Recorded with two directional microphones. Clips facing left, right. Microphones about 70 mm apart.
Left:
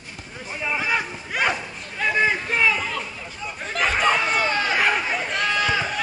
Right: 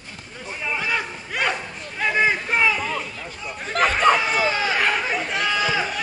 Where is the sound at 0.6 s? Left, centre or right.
Centre.